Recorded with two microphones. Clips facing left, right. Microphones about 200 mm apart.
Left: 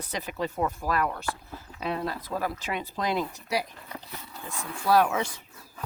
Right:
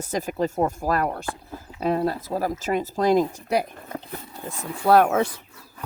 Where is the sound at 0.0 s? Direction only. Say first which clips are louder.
Right 7 dB; 45° right (ahead or behind).